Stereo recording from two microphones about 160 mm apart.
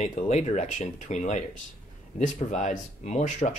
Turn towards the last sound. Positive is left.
turn(degrees=50)  # may be behind; listen again after turning